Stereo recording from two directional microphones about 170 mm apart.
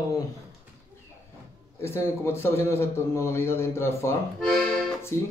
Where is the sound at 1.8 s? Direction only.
15° left (ahead or behind).